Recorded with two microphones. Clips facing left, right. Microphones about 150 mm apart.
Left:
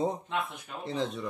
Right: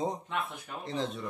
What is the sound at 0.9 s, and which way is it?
Speech, centre (ahead or behind).